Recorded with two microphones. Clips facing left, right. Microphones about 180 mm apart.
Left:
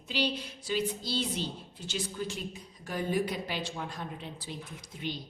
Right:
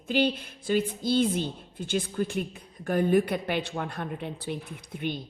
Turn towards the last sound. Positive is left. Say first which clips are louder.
# right 5 dB
turn(degrees=-55)  # may be behind; listen again after turning